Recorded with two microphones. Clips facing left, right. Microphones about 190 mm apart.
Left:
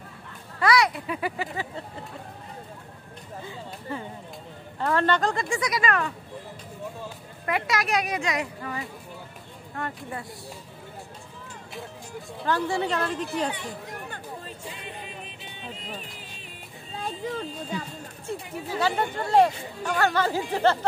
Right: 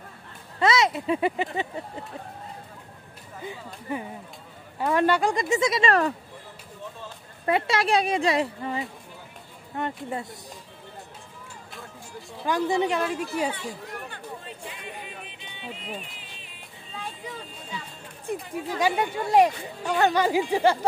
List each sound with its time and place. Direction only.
0.6 s speech: 25° right (ahead or behind)
3.9 s speech: 15° right (ahead or behind); by 6.1 s 35° right (ahead or behind)
7.4 s speech: 30° right (ahead or behind)
12.4 s speech: 15° right (ahead or behind)
14.7 s a sound: 30° left (ahead or behind)
15.7 s speech: 35° left (ahead or behind)
16.9 s a sound: 45° left (ahead or behind)
18.3 s speech: 15° right (ahead or behind)